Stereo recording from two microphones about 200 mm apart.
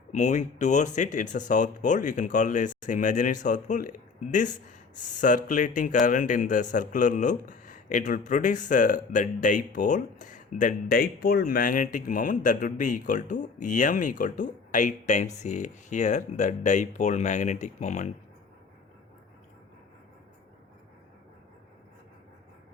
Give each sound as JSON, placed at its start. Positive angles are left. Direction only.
{"t": 0.1, "sound": "speech", "side_deg": 35}